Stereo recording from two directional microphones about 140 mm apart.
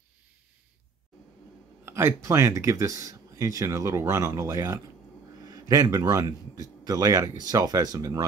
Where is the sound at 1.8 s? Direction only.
15° right (ahead or behind).